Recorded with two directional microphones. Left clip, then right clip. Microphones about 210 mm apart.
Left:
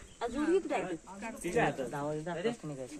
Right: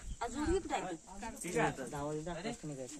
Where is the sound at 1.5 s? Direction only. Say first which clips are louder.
Left 4 dB; 50° right (ahead or behind).